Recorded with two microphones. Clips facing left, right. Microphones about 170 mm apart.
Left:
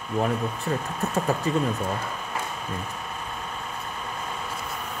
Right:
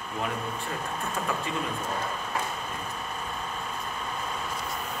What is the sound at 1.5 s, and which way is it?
Speech, 40° left (ahead or behind).